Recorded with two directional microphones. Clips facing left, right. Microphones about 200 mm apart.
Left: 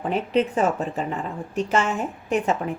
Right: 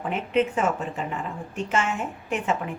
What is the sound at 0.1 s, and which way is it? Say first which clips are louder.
Speech: left 2 dB; 35° left (ahead or behind).